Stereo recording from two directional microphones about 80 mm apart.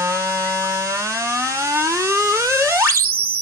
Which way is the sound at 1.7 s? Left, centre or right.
Right.